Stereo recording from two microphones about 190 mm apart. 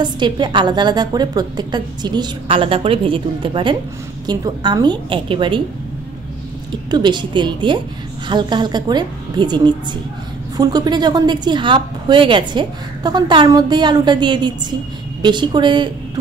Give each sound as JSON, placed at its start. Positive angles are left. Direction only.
{"t": 0.0, "sound": "a woman's voice", "side_deg": -25}
{"t": 6.9, "sound": "a woman's voice", "side_deg": -25}